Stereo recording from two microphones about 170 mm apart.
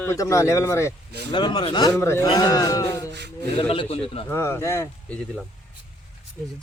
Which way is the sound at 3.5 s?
30° left (ahead or behind).